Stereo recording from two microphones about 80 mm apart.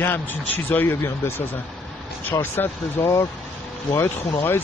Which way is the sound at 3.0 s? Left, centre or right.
Left.